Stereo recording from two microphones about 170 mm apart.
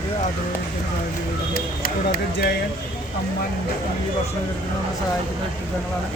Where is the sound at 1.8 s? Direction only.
60° left (ahead or behind).